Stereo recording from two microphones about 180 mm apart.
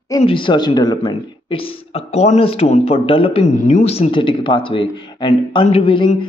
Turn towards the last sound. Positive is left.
turn(degrees=30)  # may be behind; listen again after turning